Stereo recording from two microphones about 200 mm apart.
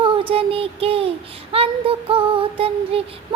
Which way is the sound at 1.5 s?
30° right (ahead or behind).